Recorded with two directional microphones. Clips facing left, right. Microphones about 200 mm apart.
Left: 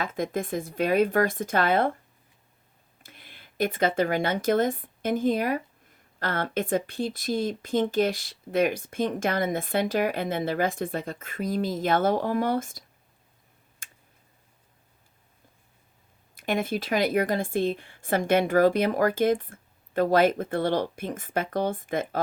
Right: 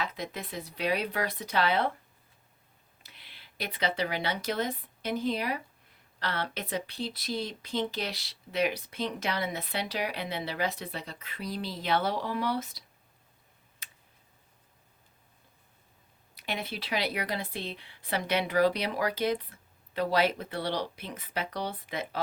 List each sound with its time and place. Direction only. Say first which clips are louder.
0.0 s speech: left 7 dB; 50° left (ahead or behind)
3.0 s speech: left 6 dB; 50° left (ahead or behind)
13.8 s a sound: left 2 dB; 50° left (ahead or behind)
16.3 s speech: left 9 dB; 50° left (ahead or behind)